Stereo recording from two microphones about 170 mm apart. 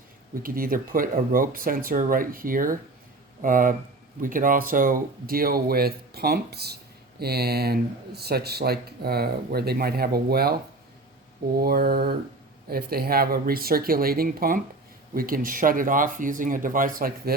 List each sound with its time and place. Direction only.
0.4 s speech: 55° right (ahead or behind)